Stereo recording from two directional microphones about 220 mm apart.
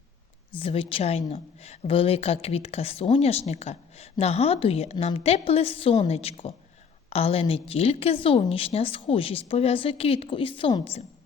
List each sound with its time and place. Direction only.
0.6 s a woman's voice: 25° left (ahead or behind)